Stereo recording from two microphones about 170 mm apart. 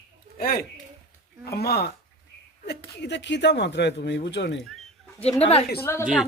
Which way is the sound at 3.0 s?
90° left.